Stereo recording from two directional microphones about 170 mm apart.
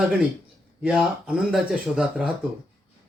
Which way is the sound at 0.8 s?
5° right (ahead or behind).